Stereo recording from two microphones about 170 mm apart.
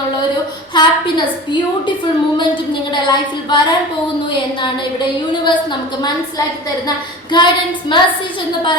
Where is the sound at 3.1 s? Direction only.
25° left (ahead or behind).